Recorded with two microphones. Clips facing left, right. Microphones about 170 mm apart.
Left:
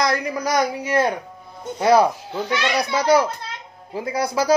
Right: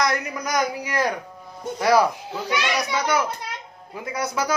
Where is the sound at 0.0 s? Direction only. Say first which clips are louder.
Left 3 dB; 30° left (ahead or behind).